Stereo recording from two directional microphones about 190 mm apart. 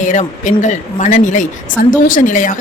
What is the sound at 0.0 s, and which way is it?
A woman's voice, 40° left (ahead or behind).